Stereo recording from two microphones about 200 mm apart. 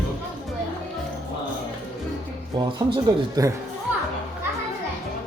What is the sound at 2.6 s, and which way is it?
Speech, 20° right (ahead or behind).